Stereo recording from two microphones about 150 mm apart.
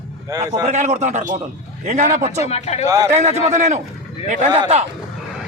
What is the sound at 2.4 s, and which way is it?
Speech, 45° left (ahead or behind).